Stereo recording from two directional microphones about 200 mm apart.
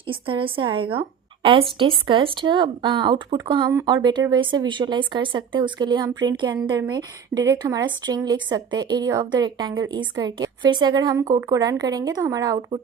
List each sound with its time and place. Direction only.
0.1 s a woman's voice: 25° right (ahead or behind)